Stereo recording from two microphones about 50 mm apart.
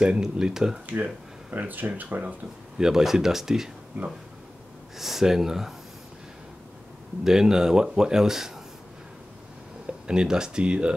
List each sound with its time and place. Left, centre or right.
0.0 s speech: centre
0.8 s speech: right
2.8 s speech: centre
4.9 s speech: centre
7.2 s speech: centre
9.8 s speech: centre